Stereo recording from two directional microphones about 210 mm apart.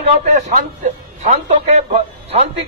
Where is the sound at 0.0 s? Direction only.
35° right (ahead or behind).